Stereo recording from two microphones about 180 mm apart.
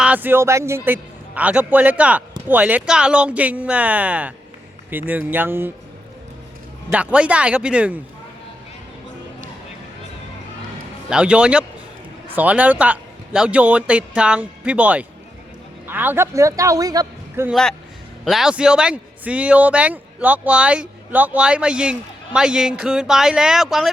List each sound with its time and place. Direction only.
0.0 s a man's voice: 10° right (ahead or behind)
6.9 s a man's voice: 5° right (ahead or behind)
11.1 s a man's voice: 5° right (ahead or behind)
17.5 s a man's voice: 5° left (ahead or behind)